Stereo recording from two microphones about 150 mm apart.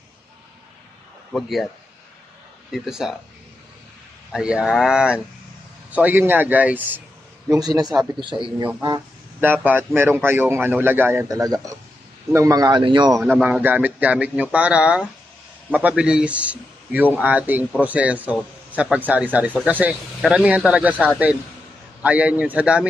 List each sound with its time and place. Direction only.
1.3 s speech: centre (ahead or behind)
2.7 s speech: centre (ahead or behind)
4.3 s a man's voice: 5° right (ahead or behind)
7.4 s a man's voice: 25° right (ahead or behind)
9.4 s a man's voice: 10° right (ahead or behind); by 13.2 s 30° right (ahead or behind)
13.4 s a man's voice: 10° right (ahead or behind)